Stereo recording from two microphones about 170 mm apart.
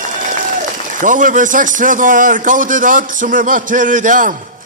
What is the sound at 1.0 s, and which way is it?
A man's voice, 50° right (ahead or behind).